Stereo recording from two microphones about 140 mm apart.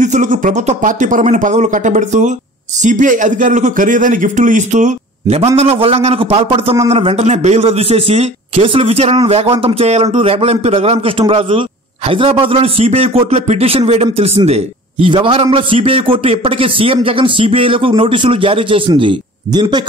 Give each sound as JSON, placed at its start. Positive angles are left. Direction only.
{"t": 0.0, "sound": "speech", "side_deg": -65}
{"t": 5.6, "sound": "a man's voice", "side_deg": -45}